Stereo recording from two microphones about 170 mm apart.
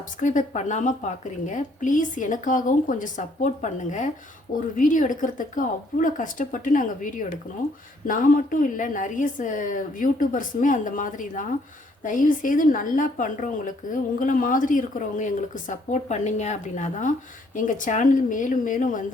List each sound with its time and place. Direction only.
0.2 s a woman's voice: 45° left (ahead or behind)